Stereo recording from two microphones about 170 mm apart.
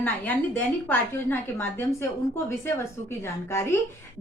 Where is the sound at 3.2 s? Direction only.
15° left (ahead or behind).